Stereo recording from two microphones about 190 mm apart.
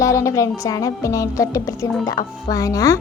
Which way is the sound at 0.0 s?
15° left (ahead or behind).